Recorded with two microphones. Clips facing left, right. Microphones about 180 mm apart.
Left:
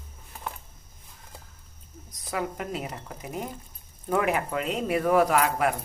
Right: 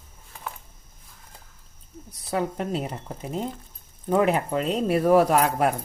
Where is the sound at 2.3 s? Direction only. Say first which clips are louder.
Right 5 dB; 30° right (ahead or behind).